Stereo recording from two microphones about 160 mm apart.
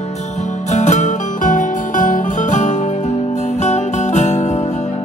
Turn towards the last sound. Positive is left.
turn(degrees=45)  # may be behind; listen again after turning